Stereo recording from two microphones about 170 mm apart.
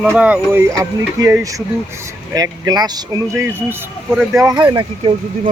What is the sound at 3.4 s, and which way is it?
Speech, 10° right (ahead or behind).